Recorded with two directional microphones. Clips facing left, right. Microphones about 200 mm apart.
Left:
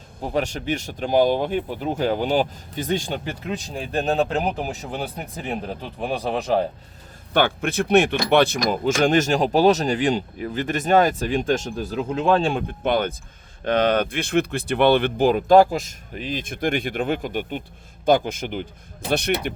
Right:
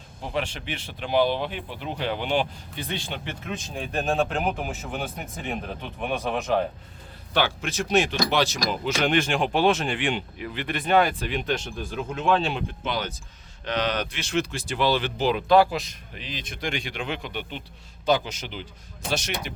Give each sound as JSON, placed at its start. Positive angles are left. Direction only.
{"t": 0.2, "sound": "speech", "side_deg": 40}
{"t": 7.3, "sound": "speech", "side_deg": 55}